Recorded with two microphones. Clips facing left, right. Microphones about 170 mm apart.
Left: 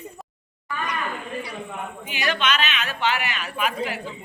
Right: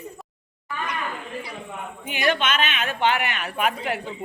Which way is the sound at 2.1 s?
50° right (ahead or behind).